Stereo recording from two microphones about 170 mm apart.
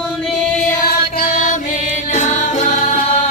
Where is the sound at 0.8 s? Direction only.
60° left (ahead or behind).